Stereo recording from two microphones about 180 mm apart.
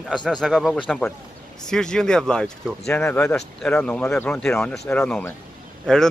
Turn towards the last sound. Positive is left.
turn(degrees=5)  # may be behind; listen again after turning